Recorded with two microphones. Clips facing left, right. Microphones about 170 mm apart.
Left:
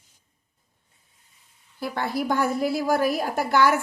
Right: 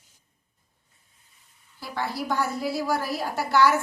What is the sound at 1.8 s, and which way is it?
A woman's voice, 55° left (ahead or behind).